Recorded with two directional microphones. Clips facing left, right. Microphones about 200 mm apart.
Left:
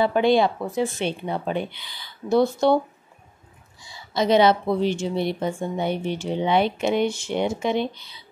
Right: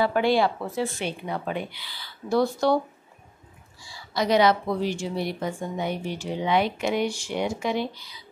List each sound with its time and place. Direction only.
0.0 s a woman's voice: 20° left (ahead or behind)
3.8 s a woman's voice: 20° left (ahead or behind)